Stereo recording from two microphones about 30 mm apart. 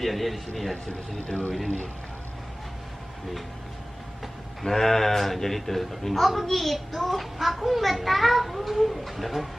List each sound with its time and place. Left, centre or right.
0.0 s a man's voice: centre
1.2 s speech: left
4.6 s a man's voice: centre